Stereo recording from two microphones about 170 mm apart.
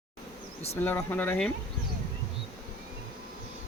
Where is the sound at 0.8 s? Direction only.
10° left (ahead or behind).